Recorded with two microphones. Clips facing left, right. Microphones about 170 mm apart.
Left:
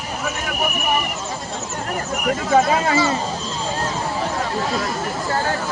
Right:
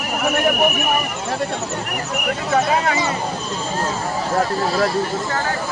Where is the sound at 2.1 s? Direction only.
70° right (ahead or behind).